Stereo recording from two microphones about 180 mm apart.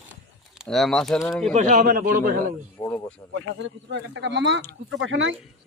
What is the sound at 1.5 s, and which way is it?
A man's voice, 45° right (ahead or behind).